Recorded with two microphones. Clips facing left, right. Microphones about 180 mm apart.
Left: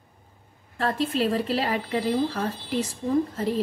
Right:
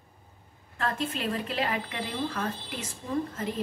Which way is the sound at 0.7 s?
35° left (ahead or behind).